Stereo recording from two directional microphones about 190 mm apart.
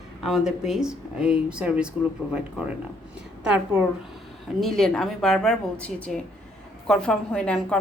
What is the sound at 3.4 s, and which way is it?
A woman's voice, 5° right (ahead or behind).